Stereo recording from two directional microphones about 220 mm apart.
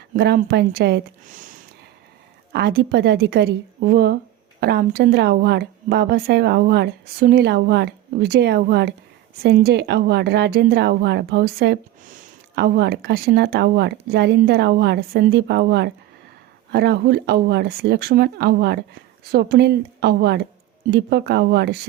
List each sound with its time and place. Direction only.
0.1 s a woman's voice: 45° right (ahead or behind)
2.5 s a woman's voice: 50° right (ahead or behind)